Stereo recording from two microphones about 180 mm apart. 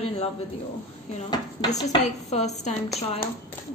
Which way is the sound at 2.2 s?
40° left (ahead or behind).